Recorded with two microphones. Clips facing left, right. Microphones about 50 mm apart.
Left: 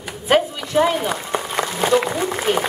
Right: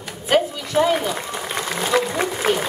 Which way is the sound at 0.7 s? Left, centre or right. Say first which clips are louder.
Left 1 dB; left.